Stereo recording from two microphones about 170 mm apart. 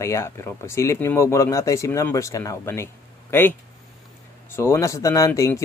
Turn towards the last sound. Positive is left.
turn(degrees=15)  # may be behind; listen again after turning